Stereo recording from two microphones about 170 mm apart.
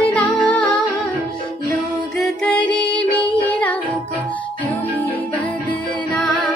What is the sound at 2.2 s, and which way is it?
Music, 5° left (ahead or behind).